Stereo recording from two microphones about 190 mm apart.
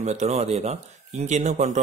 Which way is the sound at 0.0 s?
35° right (ahead or behind).